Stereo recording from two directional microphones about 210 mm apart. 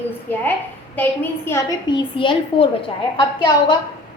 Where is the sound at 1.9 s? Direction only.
25° left (ahead or behind).